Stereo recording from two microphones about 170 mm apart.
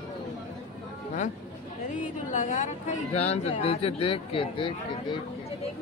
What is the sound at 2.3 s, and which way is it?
Speech, 50° left (ahead or behind).